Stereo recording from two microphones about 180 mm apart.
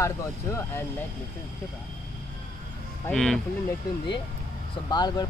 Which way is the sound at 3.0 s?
5° left (ahead or behind).